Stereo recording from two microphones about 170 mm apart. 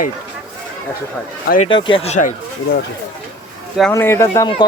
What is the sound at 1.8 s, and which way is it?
Speech, 30° left (ahead or behind).